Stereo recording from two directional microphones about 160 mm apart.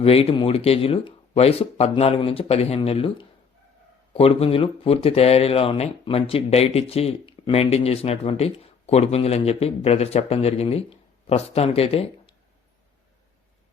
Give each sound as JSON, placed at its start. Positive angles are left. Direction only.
{"t": 0.0, "sound": "speech", "side_deg": 40}